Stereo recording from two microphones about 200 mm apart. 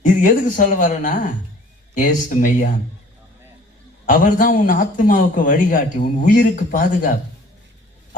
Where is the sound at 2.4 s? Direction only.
40° left (ahead or behind).